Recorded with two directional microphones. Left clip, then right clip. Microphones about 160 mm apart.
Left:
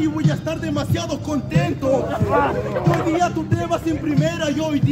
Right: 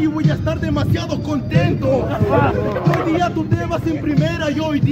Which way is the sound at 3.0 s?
5° right (ahead or behind).